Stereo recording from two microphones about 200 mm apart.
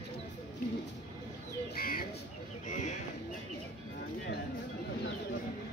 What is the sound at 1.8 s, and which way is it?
Bird, 45° left (ahead or behind).